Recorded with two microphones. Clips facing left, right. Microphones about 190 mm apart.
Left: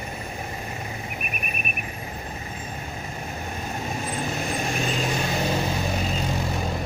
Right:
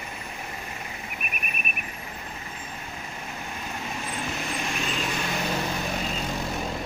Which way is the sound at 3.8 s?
40° left (ahead or behind).